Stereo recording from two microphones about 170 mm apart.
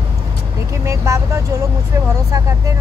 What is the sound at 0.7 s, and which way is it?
Speech, 15° right (ahead or behind).